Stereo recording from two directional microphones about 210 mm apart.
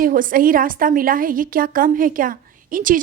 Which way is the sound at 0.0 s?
40° right (ahead or behind).